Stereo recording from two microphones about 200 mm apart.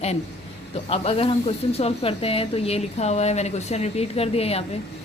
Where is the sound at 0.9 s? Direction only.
30° left (ahead or behind).